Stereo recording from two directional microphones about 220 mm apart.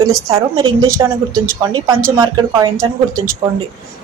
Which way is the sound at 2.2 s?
20° right (ahead or behind).